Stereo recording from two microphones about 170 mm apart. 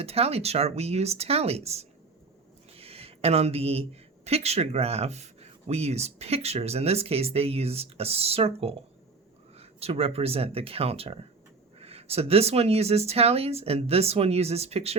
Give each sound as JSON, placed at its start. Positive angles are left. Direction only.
{"t": 0.0, "sound": "speech", "side_deg": -35}